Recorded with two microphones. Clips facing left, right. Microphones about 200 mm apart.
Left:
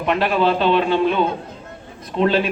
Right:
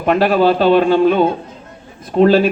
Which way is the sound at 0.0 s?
45° right (ahead or behind).